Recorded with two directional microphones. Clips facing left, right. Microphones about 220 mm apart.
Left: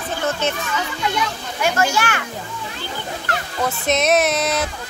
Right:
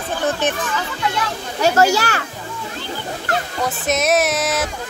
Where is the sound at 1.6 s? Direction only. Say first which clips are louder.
Right 4 dB; 40° right (ahead or behind).